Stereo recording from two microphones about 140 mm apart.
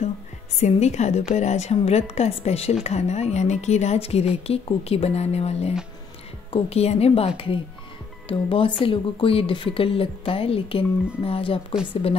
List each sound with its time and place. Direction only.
0.6 s a woman's voice: 50° left (ahead or behind)